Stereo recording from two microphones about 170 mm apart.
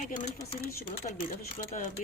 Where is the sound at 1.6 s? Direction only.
45° left (ahead or behind).